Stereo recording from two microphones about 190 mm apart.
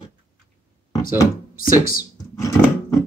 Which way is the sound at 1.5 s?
50° left (ahead or behind).